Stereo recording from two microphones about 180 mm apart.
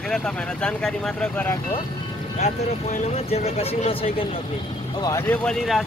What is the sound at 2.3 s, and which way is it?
Speech, 40° left (ahead or behind).